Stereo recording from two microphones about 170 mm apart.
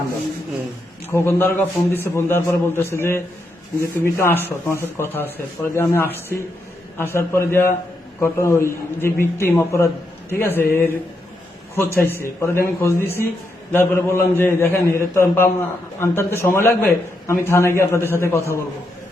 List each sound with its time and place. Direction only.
1.1 s a man's voice: 15° left (ahead or behind)